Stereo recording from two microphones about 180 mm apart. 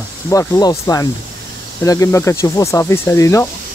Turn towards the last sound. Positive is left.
turn(degrees=15)  # may be behind; listen again after turning